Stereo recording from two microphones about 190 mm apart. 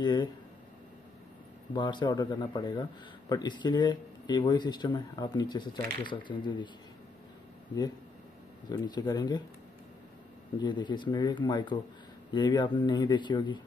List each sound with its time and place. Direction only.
0.0 s speech: 25° left (ahead or behind)
1.7 s a man's voice: 25° left (ahead or behind)
8.6 s a man's voice: 20° left (ahead or behind)
10.6 s a man's voice: 25° left (ahead or behind)